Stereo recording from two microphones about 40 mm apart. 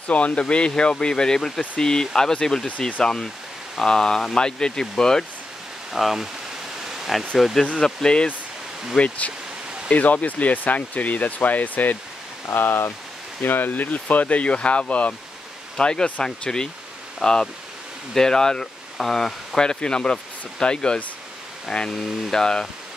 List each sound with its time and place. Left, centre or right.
0.1 s speech: left; by 5.2 s centre
6.0 s speech: centre
6.8 s pink noise: centre
7.8 s speech: centre
8.9 s speech: left
12.4 s speech: left
13.4 s speech: left
15.8 s speech: left